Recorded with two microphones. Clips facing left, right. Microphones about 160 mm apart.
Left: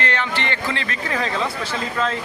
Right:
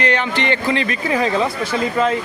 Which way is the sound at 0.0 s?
15° right (ahead or behind).